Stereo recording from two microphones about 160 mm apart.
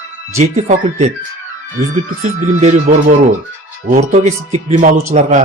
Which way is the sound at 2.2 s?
50° right (ahead or behind).